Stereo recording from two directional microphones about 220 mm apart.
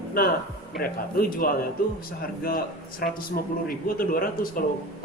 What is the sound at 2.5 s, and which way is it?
A man's voice, 40° left (ahead or behind).